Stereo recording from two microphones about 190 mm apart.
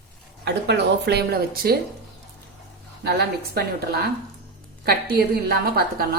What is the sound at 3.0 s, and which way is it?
A woman's voice, 55° right (ahead or behind).